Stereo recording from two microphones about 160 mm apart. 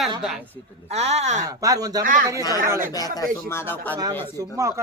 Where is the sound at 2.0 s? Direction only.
60° right (ahead or behind).